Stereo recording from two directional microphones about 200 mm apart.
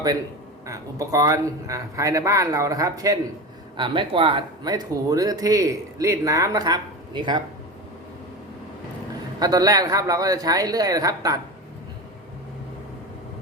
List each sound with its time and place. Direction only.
0.7 s speech: 15° right (ahead or behind)
9.4 s speech: 20° right (ahead or behind)